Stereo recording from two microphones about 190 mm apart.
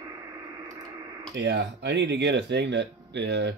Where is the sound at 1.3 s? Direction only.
65° right (ahead or behind).